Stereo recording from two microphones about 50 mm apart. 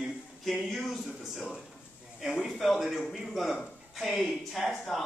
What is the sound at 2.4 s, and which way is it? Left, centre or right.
Speech, centre.